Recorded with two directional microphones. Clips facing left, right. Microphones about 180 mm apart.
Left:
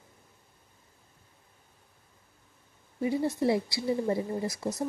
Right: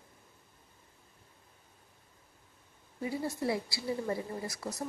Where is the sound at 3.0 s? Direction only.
25° left (ahead or behind).